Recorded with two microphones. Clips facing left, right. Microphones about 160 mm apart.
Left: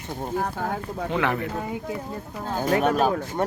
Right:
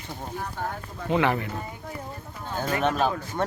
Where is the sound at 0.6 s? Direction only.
70° left (ahead or behind).